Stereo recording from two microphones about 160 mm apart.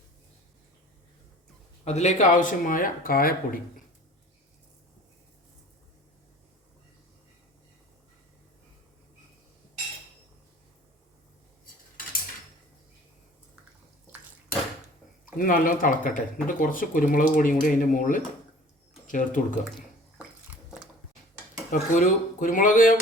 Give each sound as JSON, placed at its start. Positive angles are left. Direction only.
{"t": 1.8, "sound": "speech", "side_deg": 45}
{"t": 15.4, "sound": "speech", "side_deg": 60}
{"t": 21.7, "sound": "speech", "side_deg": 55}